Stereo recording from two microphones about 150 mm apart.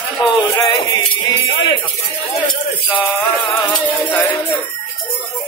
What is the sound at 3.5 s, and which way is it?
Music, 15° left (ahead or behind).